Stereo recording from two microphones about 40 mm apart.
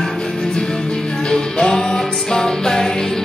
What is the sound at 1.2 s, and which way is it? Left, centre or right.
Music, centre.